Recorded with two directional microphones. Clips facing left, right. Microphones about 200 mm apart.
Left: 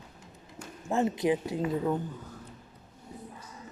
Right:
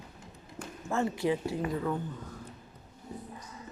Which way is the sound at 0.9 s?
20° left (ahead or behind).